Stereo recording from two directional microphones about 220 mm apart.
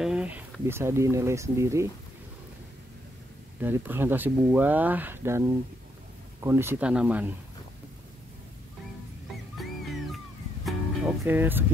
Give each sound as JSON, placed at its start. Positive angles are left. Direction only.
{"t": 0.0, "sound": "speech", "side_deg": -5}
{"t": 3.6, "sound": "speech", "side_deg": -10}
{"t": 10.1, "sound": "music", "side_deg": -5}